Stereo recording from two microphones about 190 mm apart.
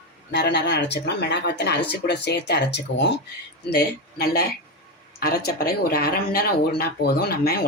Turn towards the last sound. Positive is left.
turn(degrees=55)  # may be behind; listen again after turning